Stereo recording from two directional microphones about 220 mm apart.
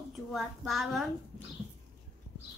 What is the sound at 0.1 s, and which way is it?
A woman's voice, centre (ahead or behind).